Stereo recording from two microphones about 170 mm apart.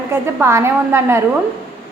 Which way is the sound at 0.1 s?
15° right (ahead or behind).